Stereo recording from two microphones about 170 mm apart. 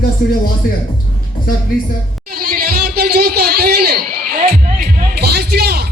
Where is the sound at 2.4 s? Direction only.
55° right (ahead or behind).